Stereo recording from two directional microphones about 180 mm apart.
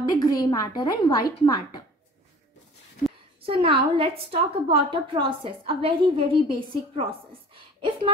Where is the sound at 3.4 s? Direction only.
30° right (ahead or behind).